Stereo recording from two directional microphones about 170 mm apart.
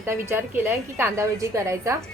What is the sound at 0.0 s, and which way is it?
A woman's voice, 15° right (ahead or behind).